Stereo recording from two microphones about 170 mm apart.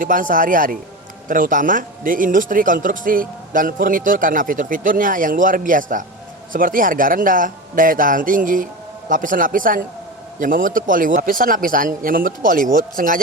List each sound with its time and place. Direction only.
0.0 s speech: 55° right (ahead or behind)